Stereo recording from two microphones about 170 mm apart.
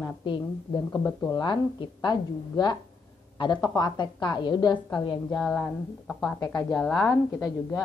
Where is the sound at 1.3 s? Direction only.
25° left (ahead or behind).